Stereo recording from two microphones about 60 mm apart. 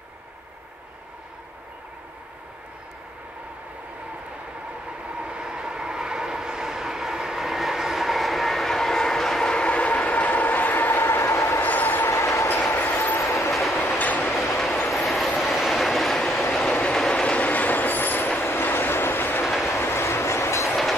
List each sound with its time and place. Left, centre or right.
5.1 s vehicle: centre
9.5 s train: centre; by 11.6 s left
11.6 s train: left
12.1 s train: left
12.4 s train: left
13.2 s train: left
13.5 s train: centre
13.7 s train: left
14.9 s vehicle: centre
17.1 s train: centre; by 20.7 s left